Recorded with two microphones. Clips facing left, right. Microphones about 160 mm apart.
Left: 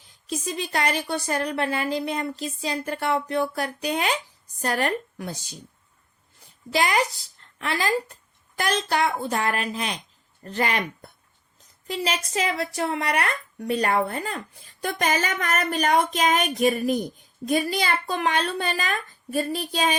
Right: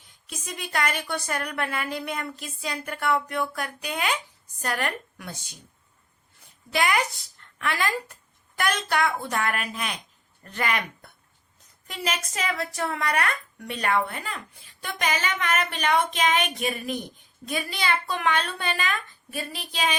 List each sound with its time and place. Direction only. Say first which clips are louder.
0.3 s speech: left 7 dB; 30° left (ahead or behind)
6.7 s speech: left 2 dB; 30° left (ahead or behind)